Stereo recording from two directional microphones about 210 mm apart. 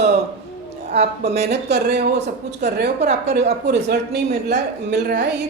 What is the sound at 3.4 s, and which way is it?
A woman's voice, 50° right (ahead or behind).